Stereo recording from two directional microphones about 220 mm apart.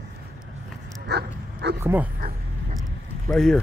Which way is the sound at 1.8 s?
10° right (ahead or behind).